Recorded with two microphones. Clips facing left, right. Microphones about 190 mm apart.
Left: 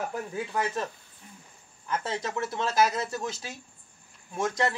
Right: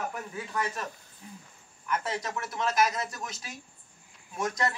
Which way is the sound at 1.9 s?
30° left (ahead or behind).